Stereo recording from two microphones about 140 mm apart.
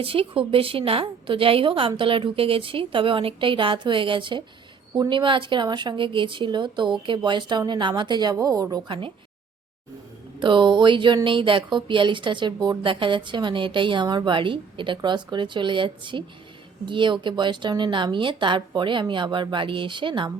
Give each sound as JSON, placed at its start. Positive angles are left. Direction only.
{"t": 0.0, "sound": "speech", "side_deg": -40}
{"t": 10.4, "sound": "speech", "side_deg": -35}